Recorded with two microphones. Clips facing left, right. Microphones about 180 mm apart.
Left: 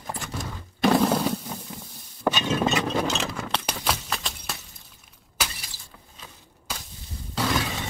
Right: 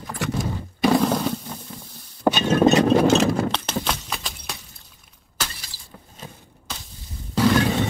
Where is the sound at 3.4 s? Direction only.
5° left (ahead or behind).